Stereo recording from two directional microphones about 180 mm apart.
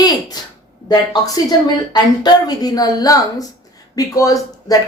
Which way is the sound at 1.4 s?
25° left (ahead or behind).